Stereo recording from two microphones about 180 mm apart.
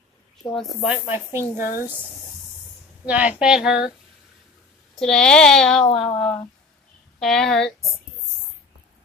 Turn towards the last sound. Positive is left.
turn(degrees=5)  # may be behind; listen again after turning